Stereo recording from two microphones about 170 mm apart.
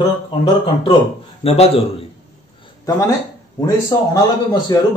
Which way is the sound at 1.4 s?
35° left (ahead or behind).